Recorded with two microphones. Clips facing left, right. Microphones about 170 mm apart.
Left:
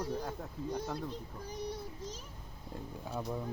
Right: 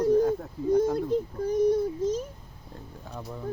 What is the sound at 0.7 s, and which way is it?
Music, 45° right (ahead or behind).